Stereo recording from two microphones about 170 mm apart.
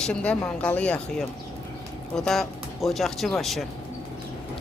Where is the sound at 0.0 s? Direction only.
5° left (ahead or behind).